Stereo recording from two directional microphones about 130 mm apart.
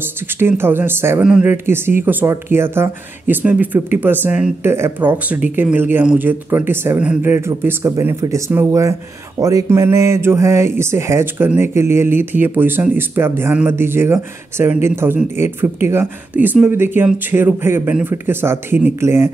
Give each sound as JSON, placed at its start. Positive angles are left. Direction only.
{"t": 0.4, "sound": "speech", "side_deg": -15}
{"t": 1.2, "sound": "speech", "side_deg": -5}
{"t": 1.5, "sound": "speech", "side_deg": -15}